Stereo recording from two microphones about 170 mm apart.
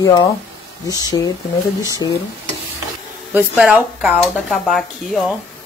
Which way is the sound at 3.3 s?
5° right (ahead or behind).